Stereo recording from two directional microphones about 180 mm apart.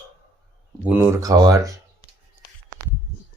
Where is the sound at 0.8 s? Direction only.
10° right (ahead or behind).